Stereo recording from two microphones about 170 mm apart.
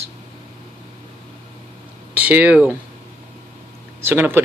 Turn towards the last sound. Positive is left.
turn(degrees=-15)  # may be behind; listen again after turning